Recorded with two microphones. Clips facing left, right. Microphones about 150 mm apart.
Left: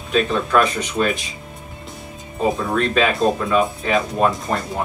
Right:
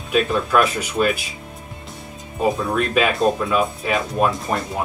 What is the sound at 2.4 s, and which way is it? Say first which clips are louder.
Speech: even; 5° right (ahead or behind).